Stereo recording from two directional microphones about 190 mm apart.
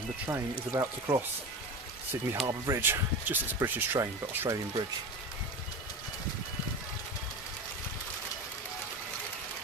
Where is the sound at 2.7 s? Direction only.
10° right (ahead or behind).